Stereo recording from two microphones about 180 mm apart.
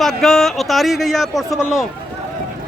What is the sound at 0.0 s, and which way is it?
A man's voice, centre (ahead or behind).